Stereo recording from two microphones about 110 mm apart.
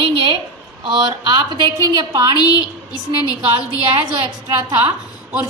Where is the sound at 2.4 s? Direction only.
35° left (ahead or behind).